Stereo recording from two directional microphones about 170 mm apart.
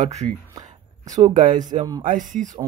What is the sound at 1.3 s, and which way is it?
Speech, 45° right (ahead or behind).